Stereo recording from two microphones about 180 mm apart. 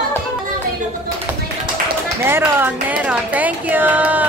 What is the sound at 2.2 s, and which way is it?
Speech, 10° right (ahead or behind).